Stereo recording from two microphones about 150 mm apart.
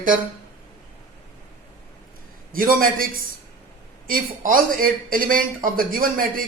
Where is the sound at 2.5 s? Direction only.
70° right (ahead or behind).